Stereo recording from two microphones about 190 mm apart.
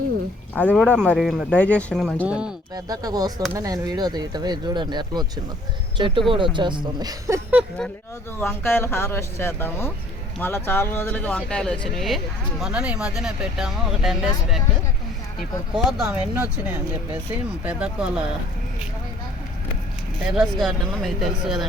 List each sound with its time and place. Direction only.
0.5 s speech: 10° left (ahead or behind)
2.7 s speech: 20° right (ahead or behind)
8.4 s speech: 10° left (ahead or behind)
16.0 s speech: 10° right (ahead or behind)
17.7 s speech: 5° right (ahead or behind)
20.3 s speech: centre (ahead or behind)